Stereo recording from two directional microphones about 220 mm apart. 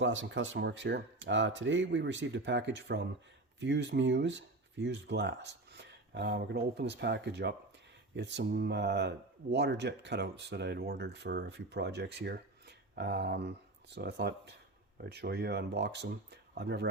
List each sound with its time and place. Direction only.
0.0 s speech: 60° right (ahead or behind)